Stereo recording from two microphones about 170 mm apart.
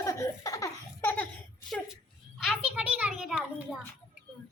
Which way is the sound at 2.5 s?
5° right (ahead or behind).